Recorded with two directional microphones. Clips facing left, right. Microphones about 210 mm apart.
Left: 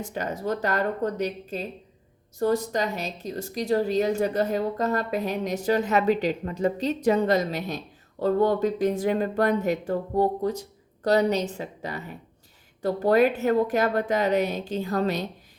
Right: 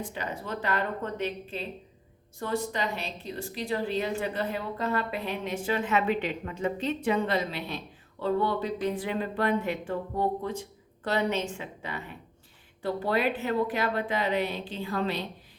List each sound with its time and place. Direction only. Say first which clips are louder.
0.0 s a woman's voice: left 6 dB; 45° left (ahead or behind)